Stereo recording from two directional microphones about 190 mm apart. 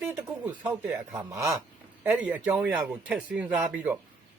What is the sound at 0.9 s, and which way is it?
Speech, 15° right (ahead or behind).